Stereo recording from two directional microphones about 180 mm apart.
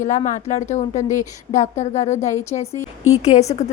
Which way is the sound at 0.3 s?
40° left (ahead or behind).